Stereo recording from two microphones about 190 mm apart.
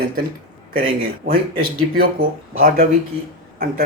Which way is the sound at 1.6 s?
50° right (ahead or behind).